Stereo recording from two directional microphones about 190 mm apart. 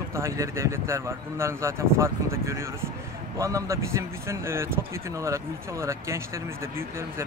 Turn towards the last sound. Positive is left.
turn(degrees=-15)  # may be behind; listen again after turning